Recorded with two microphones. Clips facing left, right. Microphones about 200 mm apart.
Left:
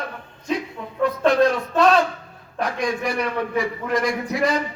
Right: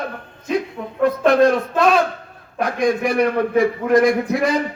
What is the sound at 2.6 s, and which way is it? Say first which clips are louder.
A man's voice: right 5 dB; 50° right (ahead or behind).